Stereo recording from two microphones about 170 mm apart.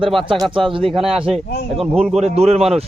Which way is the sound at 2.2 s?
40° right (ahead or behind).